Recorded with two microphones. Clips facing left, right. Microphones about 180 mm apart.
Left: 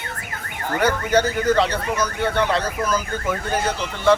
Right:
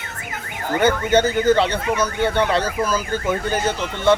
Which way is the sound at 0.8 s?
25° right (ahead or behind).